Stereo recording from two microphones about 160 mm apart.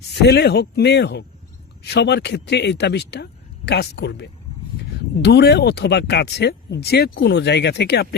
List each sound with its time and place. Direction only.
0.1 s speech: 90° left